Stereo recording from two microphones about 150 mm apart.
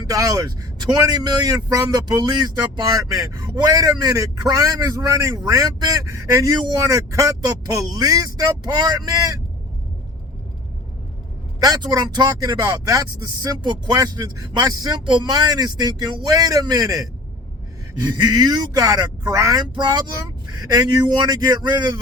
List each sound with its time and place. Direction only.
0.1 s speech: 25° right (ahead or behind)
11.6 s speech: 25° right (ahead or behind)